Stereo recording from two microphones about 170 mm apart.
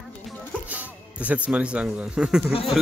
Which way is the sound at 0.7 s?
10° right (ahead or behind).